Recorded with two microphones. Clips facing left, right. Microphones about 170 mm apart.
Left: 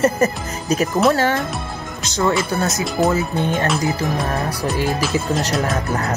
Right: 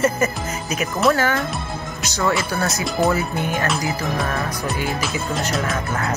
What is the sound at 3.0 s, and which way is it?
Speech, centre (ahead or behind).